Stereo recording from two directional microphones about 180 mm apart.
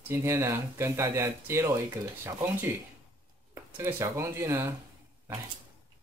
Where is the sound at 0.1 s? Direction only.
15° right (ahead or behind).